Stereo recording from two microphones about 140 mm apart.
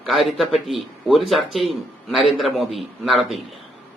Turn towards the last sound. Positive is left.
turn(degrees=0)  # may be behind; listen again after turning